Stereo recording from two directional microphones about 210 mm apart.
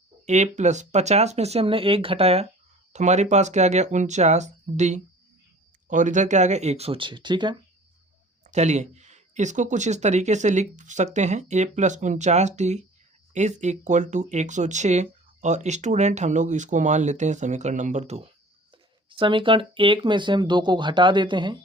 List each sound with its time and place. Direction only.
0.3 s speech: 35° right (ahead or behind)
8.4 s speech: 35° right (ahead or behind)